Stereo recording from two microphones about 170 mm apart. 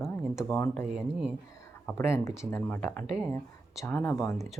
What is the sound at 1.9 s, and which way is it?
Speech, 15° left (ahead or behind).